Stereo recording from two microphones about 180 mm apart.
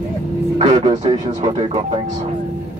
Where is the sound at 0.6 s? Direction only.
30° right (ahead or behind).